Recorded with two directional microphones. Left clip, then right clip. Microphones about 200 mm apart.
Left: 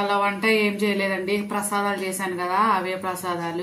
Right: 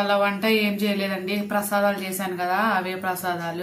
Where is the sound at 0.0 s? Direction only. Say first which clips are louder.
Even; 35° right (ahead or behind).